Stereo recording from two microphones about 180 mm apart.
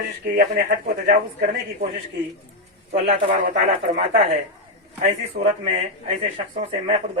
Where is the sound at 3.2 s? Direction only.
45° right (ahead or behind).